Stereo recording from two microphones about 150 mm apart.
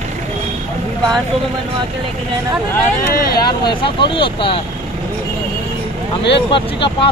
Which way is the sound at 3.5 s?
30° left (ahead or behind).